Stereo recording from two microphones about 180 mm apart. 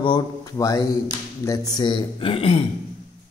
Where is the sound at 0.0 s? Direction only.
20° left (ahead or behind).